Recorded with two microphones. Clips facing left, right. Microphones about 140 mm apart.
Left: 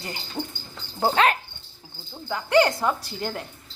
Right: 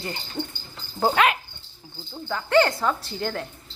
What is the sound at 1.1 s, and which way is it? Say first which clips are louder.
Speech: left 1 dB; 35° left (ahead or behind).